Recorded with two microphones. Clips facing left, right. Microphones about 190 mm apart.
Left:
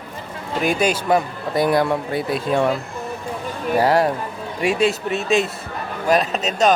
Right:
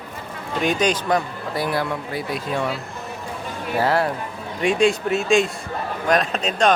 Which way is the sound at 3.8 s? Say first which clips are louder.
Left 3 dB; 15° left (ahead or behind).